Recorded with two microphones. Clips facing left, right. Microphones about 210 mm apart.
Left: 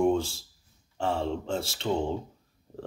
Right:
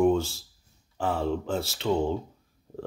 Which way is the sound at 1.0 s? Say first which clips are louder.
Right 1 dB; 25° left (ahead or behind).